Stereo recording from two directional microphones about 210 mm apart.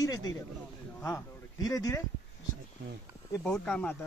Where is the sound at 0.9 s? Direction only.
15° left (ahead or behind).